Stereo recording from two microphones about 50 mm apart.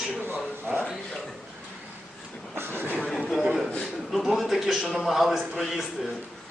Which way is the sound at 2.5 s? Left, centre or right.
Right.